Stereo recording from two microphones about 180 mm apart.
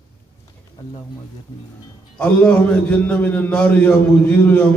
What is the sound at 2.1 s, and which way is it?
A man's voice, 5° left (ahead or behind).